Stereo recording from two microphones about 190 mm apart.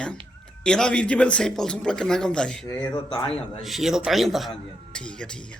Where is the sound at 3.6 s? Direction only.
Centre (ahead or behind).